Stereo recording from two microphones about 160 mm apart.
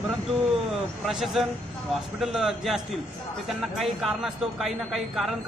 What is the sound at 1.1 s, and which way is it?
Speech, centre (ahead or behind).